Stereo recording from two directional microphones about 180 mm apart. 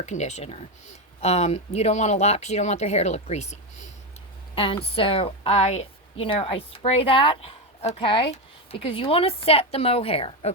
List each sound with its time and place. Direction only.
0.0 s a woman's voice: 40° left (ahead or behind)